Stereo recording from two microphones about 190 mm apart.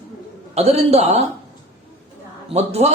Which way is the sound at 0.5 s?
35° right (ahead or behind).